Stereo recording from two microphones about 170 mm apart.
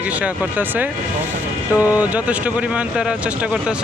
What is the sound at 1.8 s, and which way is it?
Speech, 10° right (ahead or behind).